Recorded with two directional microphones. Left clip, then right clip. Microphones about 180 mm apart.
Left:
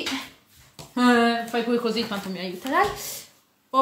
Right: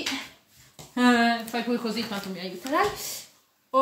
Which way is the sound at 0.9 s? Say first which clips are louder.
Left 2 dB; 15° left (ahead or behind).